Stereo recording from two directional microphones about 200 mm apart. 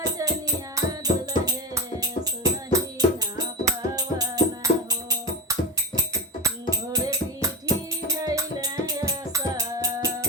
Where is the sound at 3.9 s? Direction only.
20° right (ahead or behind).